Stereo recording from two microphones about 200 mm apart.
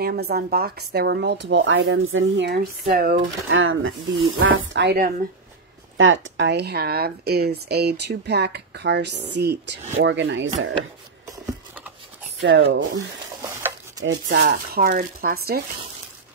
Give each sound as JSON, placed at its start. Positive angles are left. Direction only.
{"t": 0.0, "sound": "speech", "side_deg": -50}
{"t": 3.2, "sound": "speech", "side_deg": -75}
{"t": 5.9, "sound": "speech", "side_deg": -75}
{"t": 12.4, "sound": "speech", "side_deg": -65}
{"t": 13.4, "sound": "stir", "side_deg": -15}
{"t": 14.0, "sound": "speech", "side_deg": -60}